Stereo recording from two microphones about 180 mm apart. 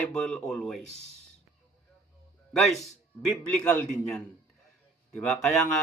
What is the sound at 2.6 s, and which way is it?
Speech, centre (ahead or behind).